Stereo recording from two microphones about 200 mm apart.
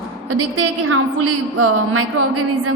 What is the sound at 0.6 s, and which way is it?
A woman's voice, 90° right.